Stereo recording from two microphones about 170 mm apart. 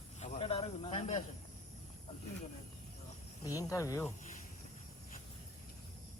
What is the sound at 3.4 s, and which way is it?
Speech, 20° left (ahead or behind).